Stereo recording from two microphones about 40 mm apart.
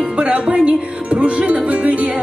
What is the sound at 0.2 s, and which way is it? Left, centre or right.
Music, right.